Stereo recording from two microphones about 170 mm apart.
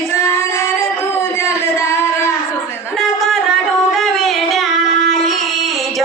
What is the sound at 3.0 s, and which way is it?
Music, centre (ahead or behind).